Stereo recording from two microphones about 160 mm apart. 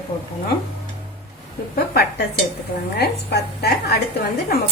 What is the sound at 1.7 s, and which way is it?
A woman's voice, 75° left (ahead or behind).